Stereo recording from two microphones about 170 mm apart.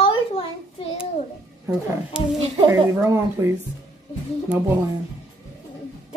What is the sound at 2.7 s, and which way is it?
Speech, 15° right (ahead or behind).